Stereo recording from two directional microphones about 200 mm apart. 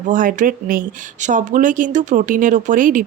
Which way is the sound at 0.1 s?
40° right (ahead or behind).